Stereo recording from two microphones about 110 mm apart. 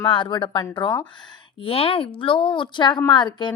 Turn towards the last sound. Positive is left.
turn(degrees=40)  # may be behind; listen again after turning